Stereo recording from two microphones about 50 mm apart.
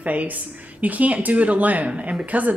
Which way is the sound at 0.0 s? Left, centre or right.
Right.